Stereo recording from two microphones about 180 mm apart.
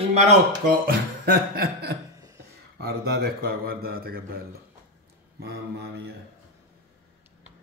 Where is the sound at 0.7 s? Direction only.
55° right (ahead or behind).